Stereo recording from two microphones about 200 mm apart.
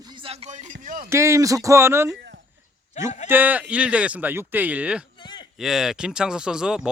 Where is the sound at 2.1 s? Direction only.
55° right (ahead or behind).